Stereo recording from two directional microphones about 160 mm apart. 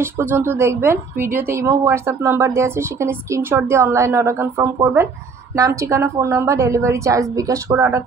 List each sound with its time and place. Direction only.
0.0 s a woman's voice: 15° right (ahead or behind)